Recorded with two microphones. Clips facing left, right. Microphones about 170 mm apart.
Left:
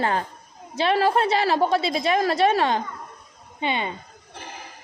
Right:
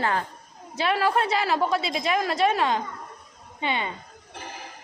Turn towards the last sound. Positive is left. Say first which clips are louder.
# left 2 dB
turn(degrees=20)  # may be behind; listen again after turning